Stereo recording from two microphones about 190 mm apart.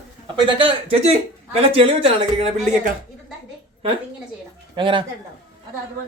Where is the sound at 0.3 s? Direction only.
25° right (ahead or behind).